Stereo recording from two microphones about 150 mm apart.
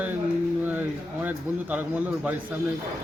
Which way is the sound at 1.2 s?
10° right (ahead or behind).